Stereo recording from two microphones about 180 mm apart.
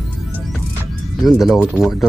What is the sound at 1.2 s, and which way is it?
Speech, centre (ahead or behind).